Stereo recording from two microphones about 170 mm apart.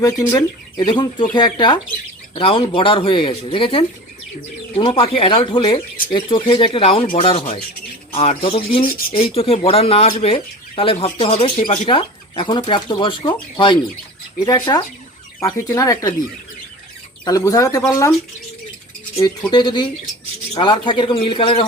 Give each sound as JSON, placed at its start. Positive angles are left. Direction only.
{"t": 0.0, "sound": "speech", "side_deg": 20}
{"t": 17.2, "sound": "speech", "side_deg": 20}
{"t": 19.2, "sound": "speech", "side_deg": 25}